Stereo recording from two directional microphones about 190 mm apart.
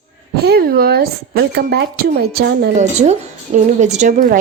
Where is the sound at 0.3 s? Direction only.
55° right (ahead or behind).